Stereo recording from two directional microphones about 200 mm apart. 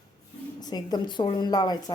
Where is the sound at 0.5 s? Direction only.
20° left (ahead or behind).